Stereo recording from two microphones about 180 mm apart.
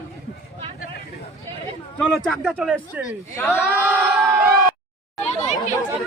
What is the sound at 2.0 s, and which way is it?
Speech, 5° left (ahead or behind).